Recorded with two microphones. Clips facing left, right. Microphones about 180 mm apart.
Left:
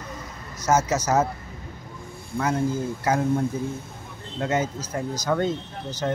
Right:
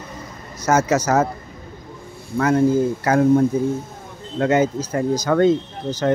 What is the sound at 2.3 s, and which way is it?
Speech, 70° right (ahead or behind).